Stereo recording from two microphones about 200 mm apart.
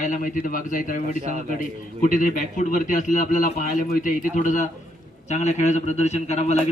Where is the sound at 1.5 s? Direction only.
40° left (ahead or behind).